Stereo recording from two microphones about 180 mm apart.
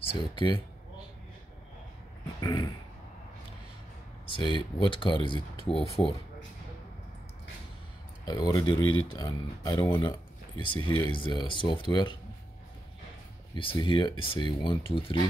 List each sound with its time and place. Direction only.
0.2 s speech: 25° left (ahead or behind)
2.4 s a sound: 20° left (ahead or behind)
4.3 s speech: 25° left (ahead or behind)
8.3 s speech: 20° left (ahead or behind)
10.6 s speech: 30° left (ahead or behind)
13.6 s speech: 30° left (ahead or behind)